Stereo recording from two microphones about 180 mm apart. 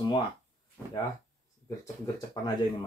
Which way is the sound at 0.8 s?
10° left (ahead or behind).